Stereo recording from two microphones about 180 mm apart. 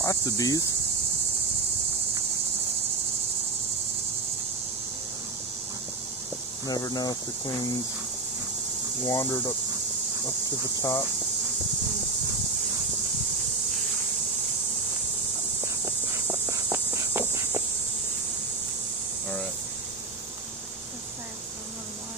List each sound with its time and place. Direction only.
0.0 s speech: 20° left (ahead or behind)
6.7 s speech: 20° left (ahead or behind)
9.0 s speech: 15° left (ahead or behind)
10.8 s speech: 15° left (ahead or behind)
15.6 s insect: 20° right (ahead or behind)